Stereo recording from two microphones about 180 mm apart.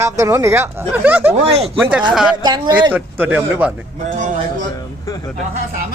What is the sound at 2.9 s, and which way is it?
Speech, 10° right (ahead or behind).